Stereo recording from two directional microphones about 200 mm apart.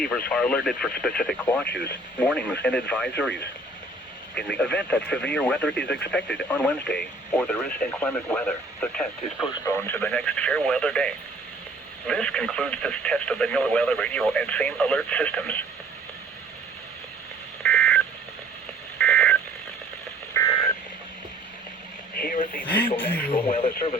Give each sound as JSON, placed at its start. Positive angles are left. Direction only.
{"t": 0.3, "sound": "speech", "side_deg": 5}
{"t": 1.7, "sound": "speech", "side_deg": 55}
{"t": 2.1, "sound": "speech", "side_deg": 5}
{"t": 4.4, "sound": "speech", "side_deg": 5}
{"t": 17.6, "sound": "telephone dialing", "side_deg": 10}
{"t": 20.3, "sound": "a sound", "side_deg": 15}
{"t": 22.3, "sound": "speech", "side_deg": 40}
{"t": 22.6, "sound": "speech", "side_deg": 10}
{"t": 23.3, "sound": "speech", "side_deg": 30}